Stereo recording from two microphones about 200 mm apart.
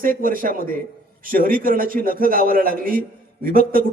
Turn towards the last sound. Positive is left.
turn(degrees=-45)  # may be behind; listen again after turning